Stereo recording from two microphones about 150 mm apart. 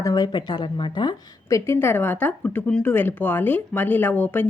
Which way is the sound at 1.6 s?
15° left (ahead or behind).